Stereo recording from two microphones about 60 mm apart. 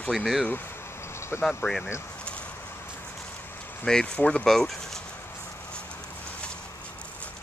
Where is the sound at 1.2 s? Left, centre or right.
Left.